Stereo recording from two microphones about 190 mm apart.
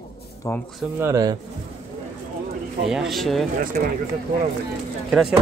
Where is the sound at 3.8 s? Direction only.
45° right (ahead or behind).